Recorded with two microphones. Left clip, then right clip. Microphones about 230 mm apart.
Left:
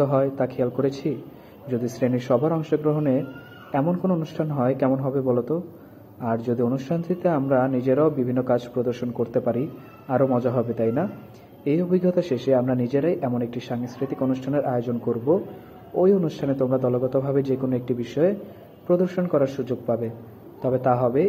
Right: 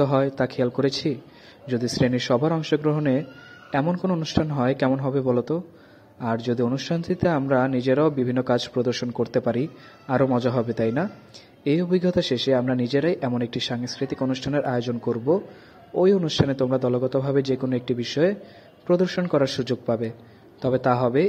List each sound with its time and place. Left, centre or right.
0.0 s a man's voice: right